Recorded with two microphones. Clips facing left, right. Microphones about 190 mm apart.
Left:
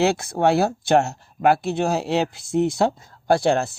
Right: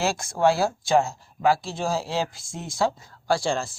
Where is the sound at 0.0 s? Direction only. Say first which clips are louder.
Left 3 dB; 60° left (ahead or behind).